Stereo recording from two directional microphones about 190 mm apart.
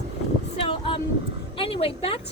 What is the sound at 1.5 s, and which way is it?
Speech, 30° left (ahead or behind).